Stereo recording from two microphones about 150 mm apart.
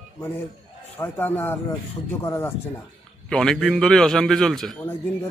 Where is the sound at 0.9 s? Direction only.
15° left (ahead or behind).